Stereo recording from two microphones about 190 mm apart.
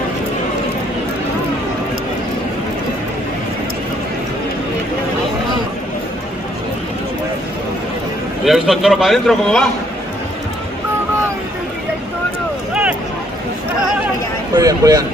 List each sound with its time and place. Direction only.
8.5 s a man's voice: centre (ahead or behind)
14.5 s speech: 20° right (ahead or behind)